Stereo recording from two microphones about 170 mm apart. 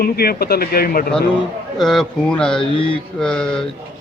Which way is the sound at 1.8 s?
Centre (ahead or behind).